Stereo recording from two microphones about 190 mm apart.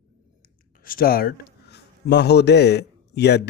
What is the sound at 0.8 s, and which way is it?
A man's voice, 50° left (ahead or behind).